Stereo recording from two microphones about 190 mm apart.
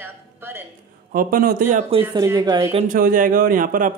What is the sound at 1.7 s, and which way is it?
Speech, 35° right (ahead or behind).